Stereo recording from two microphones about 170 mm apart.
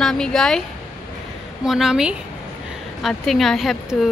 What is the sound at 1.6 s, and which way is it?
Speech, centre (ahead or behind).